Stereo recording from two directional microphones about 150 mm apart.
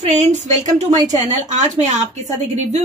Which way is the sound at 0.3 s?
50° right (ahead or behind).